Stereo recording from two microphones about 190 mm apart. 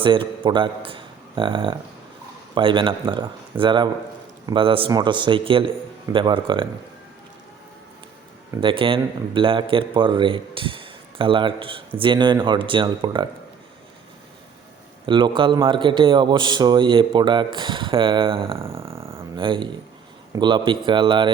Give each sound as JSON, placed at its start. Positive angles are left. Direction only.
{"t": 0.0, "sound": "a man's voice", "side_deg": -25}
{"t": 8.6, "sound": "a man's voice", "side_deg": -25}
{"t": 15.0, "sound": "a man's voice", "side_deg": -25}